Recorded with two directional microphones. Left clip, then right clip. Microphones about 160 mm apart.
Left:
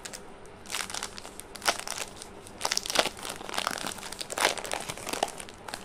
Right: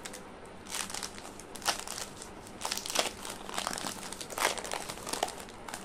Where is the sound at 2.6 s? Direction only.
25° left (ahead or behind).